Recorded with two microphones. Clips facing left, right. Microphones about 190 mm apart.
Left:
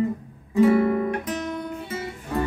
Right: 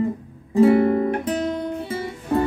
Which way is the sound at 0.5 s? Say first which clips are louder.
Right 3 dB; 30° right (ahead or behind).